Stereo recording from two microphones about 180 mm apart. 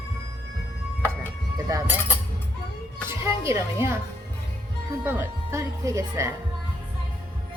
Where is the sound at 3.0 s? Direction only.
15° right (ahead or behind).